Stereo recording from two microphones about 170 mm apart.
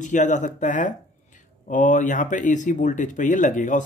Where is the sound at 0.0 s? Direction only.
45° left (ahead or behind).